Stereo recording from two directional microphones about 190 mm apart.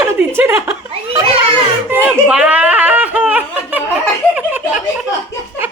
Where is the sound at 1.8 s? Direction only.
5° right (ahead or behind).